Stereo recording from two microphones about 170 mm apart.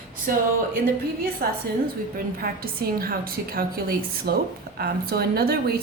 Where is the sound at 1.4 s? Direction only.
60° right (ahead or behind).